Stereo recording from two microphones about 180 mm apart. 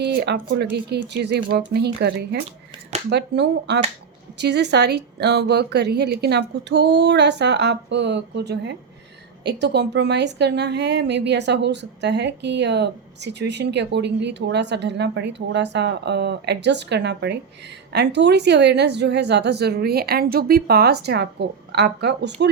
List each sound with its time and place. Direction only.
0.0 s a woman's voice: 65° right (ahead or behind)